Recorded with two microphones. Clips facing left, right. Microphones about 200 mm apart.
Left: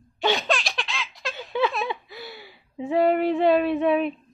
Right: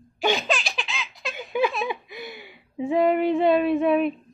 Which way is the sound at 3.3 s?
Centre (ahead or behind).